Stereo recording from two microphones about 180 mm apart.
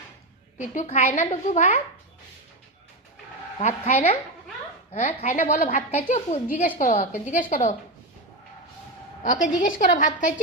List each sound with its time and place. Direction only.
0.6 s a woman's voice: 40° left (ahead or behind)
3.6 s a woman's voice: 40° left (ahead or behind)
9.2 s a woman's voice: 45° left (ahead or behind)